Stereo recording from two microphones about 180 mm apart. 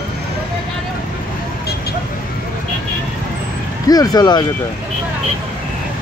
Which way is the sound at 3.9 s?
20° left (ahead or behind).